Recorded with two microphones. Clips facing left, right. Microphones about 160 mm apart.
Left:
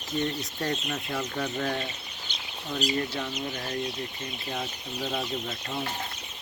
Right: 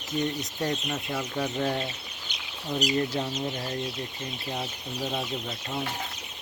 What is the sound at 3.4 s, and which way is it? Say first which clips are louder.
Speech: right 1 dB; 20° right (ahead or behind).